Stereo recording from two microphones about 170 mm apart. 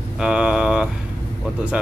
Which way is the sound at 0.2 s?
5° right (ahead or behind).